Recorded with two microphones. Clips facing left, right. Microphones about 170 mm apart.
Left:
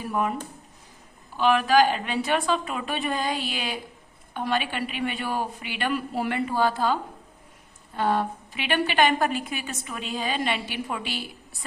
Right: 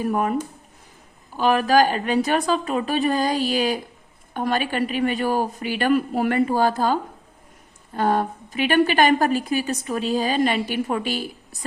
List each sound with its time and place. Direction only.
0.0 s a woman's voice: 50° right (ahead or behind)
1.4 s a woman's voice: 40° right (ahead or behind)